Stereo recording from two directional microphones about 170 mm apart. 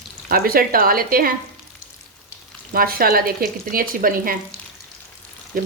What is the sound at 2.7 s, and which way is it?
A woman's voice, 60° right (ahead or behind).